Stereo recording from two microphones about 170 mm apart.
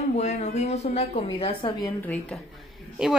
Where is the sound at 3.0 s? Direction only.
5° right (ahead or behind).